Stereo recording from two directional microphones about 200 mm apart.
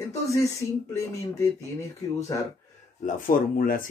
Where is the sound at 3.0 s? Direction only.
45° left (ahead or behind).